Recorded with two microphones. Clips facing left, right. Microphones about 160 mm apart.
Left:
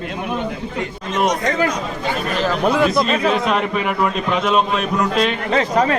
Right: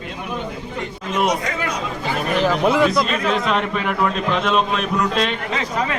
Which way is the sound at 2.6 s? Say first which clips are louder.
Left 1 dB; 5° right (ahead or behind).